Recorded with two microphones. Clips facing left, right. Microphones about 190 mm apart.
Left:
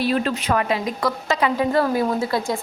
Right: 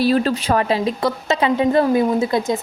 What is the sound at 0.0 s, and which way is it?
A woman's voice, 35° right (ahead or behind).